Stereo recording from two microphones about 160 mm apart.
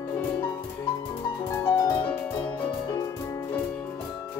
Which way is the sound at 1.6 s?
20° left (ahead or behind).